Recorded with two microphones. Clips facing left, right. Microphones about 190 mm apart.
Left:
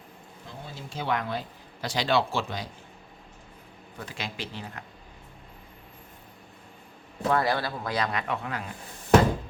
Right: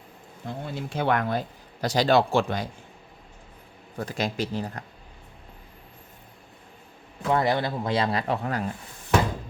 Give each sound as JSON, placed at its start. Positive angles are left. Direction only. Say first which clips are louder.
{"t": 0.4, "sound": "speech", "louder": "right 9 dB", "side_deg": -60}
{"t": 3.9, "sound": "speech", "louder": "right 9 dB", "side_deg": -40}
{"t": 7.3, "sound": "speech", "louder": "right 2 dB", "side_deg": -20}